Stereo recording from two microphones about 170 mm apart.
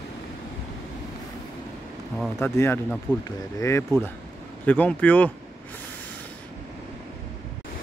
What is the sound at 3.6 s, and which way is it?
Speech, 15° left (ahead or behind).